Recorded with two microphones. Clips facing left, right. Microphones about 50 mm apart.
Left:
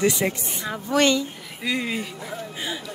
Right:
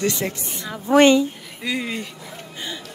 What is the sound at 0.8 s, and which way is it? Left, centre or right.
Speech, right.